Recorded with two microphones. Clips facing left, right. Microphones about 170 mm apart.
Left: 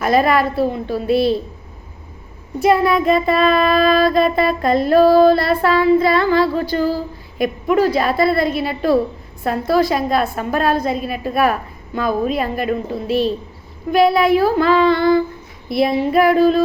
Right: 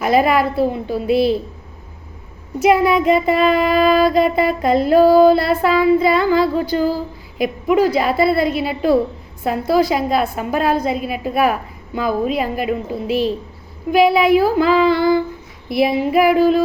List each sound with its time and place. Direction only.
0.0 s child singing: 15° right (ahead or behind)
2.6 s child singing: 15° right (ahead or behind)